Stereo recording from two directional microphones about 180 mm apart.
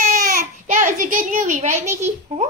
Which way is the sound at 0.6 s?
45° right (ahead or behind).